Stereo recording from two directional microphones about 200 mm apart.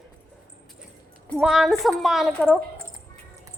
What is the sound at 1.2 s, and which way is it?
A woman's voice, centre (ahead or behind).